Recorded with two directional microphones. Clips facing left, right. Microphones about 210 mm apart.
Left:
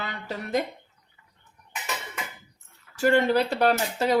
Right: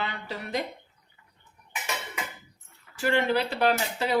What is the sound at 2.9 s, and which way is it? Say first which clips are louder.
Speech: left 4 dB; 40° left (ahead or behind).